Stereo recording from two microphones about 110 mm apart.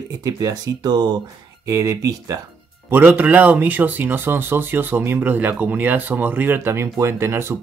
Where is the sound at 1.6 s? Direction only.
30° right (ahead or behind).